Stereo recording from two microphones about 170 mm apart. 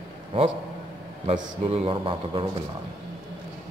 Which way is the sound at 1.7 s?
30° right (ahead or behind).